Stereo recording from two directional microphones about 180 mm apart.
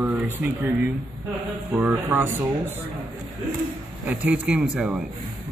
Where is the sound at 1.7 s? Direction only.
10° right (ahead or behind).